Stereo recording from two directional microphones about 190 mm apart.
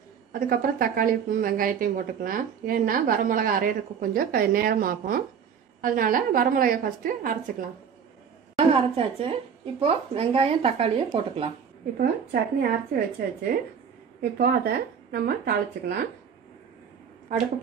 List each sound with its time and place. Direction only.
0.3 s a woman's voice: 50° right (ahead or behind)
8.5 s a woman's voice: 30° right (ahead or behind)
12.0 s a woman's voice: 55° right (ahead or behind)